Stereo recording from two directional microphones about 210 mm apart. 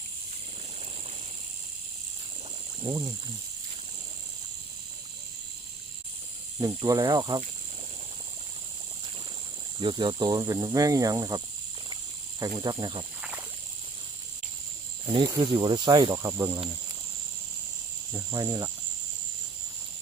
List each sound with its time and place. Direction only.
2.8 s speech: 20° right (ahead or behind)
6.6 s speech: 15° right (ahead or behind)
9.7 s speech: 25° right (ahead or behind)
15.0 s speech: 20° right (ahead or behind)
18.1 s speech: 15° right (ahead or behind)